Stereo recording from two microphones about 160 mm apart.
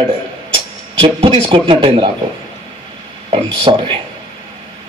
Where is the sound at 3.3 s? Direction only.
30° right (ahead or behind).